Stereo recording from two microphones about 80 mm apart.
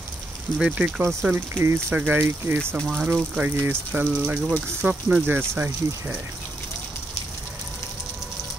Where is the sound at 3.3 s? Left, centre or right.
Centre.